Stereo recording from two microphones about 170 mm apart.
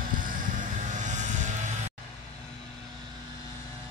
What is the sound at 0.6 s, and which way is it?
Vehicle, 45° right (ahead or behind).